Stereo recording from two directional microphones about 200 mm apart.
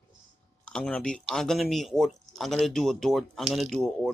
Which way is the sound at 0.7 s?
5° left (ahead or behind).